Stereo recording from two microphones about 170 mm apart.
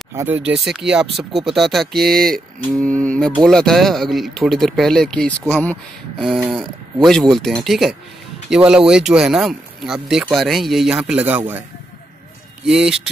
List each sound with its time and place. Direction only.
0.1 s speech: 15° right (ahead or behind)
0.7 s speech: 5° right (ahead or behind)
12.6 s speech: 5° right (ahead or behind)